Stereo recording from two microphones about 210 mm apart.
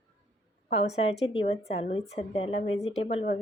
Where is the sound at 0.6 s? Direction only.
30° left (ahead or behind).